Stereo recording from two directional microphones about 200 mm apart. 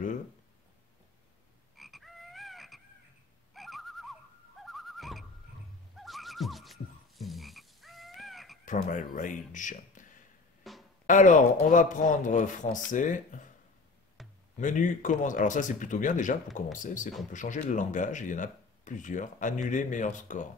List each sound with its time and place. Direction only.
1.8 s croak: centre (ahead or behind)
3.5 s a sound: centre (ahead or behind)
4.6 s neigh: centre (ahead or behind)
5.9 s croak: centre (ahead or behind)
8.6 s speech: 40° left (ahead or behind)
10.6 s drum: centre (ahead or behind)
11.1 s speech: 40° left (ahead or behind)
14.2 s a sound: centre (ahead or behind)
14.6 s speech: 40° left (ahead or behind)